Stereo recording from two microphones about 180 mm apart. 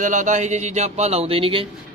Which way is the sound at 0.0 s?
45° right (ahead or behind).